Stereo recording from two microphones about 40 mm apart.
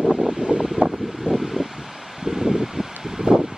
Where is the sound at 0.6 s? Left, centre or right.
Centre.